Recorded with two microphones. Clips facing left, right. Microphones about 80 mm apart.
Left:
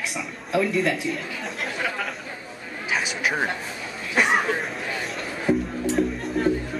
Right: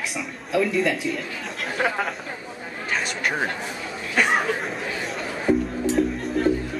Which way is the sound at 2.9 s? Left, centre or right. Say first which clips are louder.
Left 1 dB; centre.